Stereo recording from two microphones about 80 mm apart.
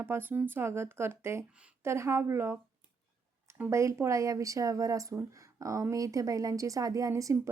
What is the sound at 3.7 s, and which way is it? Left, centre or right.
A woman's voice, right.